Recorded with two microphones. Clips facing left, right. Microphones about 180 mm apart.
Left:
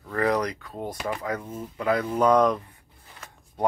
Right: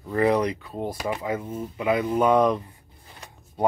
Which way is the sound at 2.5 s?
20° right (ahead or behind).